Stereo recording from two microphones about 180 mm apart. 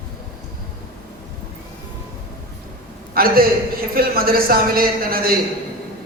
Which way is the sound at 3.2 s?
55° right (ahead or behind).